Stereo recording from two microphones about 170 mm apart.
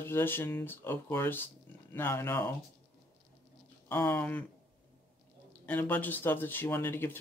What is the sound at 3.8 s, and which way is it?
Speech, 15° left (ahead or behind).